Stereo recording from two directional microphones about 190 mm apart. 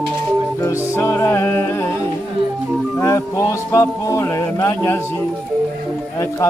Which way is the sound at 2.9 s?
15° left (ahead or behind).